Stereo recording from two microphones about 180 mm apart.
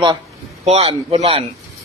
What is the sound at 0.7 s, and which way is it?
Speech, 35° right (ahead or behind).